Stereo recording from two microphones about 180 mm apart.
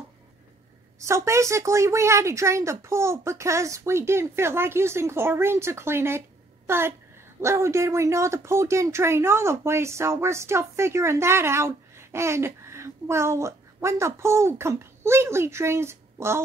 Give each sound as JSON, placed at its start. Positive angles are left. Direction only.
{"t": 0.9, "sound": "speech", "side_deg": -15}